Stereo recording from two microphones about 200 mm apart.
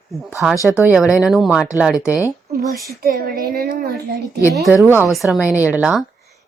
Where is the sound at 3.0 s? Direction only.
45° right (ahead or behind).